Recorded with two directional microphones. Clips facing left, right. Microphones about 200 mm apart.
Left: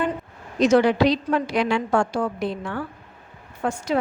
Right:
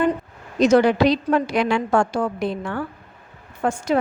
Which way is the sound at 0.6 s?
45° right (ahead or behind).